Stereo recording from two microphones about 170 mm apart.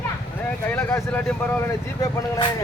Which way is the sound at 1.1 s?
10° left (ahead or behind).